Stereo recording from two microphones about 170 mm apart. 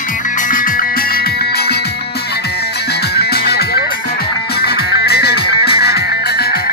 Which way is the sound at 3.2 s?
70° left (ahead or behind).